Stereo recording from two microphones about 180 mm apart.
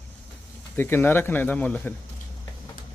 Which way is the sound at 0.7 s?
10° left (ahead or behind).